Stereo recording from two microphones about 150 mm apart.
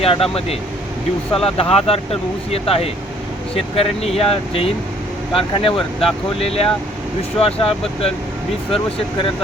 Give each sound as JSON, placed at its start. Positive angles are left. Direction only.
{"t": 0.0, "sound": "speech", "side_deg": 40}